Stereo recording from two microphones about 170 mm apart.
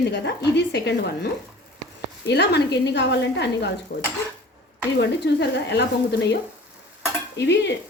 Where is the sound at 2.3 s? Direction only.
80° left.